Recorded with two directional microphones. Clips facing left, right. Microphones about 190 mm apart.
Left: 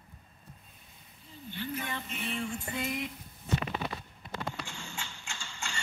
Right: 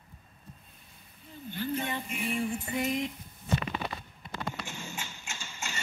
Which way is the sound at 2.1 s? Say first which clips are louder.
Right 4 dB; 10° right (ahead or behind).